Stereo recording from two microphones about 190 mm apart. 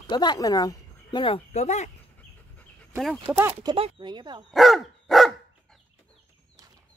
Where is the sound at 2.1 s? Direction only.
5° left (ahead or behind).